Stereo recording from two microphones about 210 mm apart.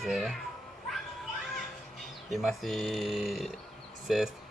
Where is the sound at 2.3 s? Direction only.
Centre (ahead or behind).